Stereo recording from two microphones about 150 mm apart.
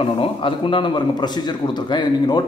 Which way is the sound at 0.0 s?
35° left (ahead or behind).